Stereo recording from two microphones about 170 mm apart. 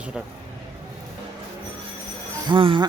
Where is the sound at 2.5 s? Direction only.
30° right (ahead or behind).